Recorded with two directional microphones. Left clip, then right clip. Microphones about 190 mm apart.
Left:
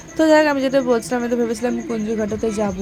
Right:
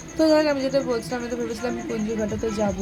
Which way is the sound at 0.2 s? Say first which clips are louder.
Left 5 dB; 35° left (ahead or behind).